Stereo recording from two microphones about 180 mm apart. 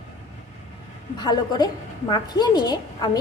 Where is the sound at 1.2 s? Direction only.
25° left (ahead or behind).